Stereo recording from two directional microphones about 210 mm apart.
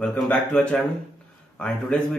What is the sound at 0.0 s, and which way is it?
A man's voice, 5° left (ahead or behind).